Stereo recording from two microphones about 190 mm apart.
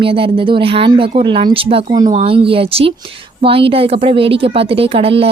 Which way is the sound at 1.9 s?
40° right (ahead or behind).